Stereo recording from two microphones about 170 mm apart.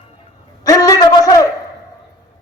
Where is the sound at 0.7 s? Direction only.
20° left (ahead or behind).